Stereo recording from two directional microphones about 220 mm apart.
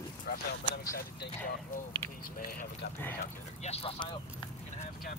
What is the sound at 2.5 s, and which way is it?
Speech, 40° left (ahead or behind).